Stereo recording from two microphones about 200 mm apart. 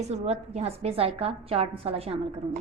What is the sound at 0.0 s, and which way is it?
A woman's voice, 35° right (ahead or behind).